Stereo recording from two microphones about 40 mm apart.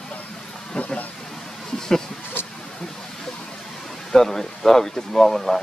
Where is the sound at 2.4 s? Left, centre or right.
Left.